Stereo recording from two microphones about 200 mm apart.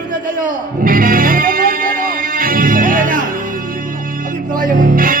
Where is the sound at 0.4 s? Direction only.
45° right (ahead or behind).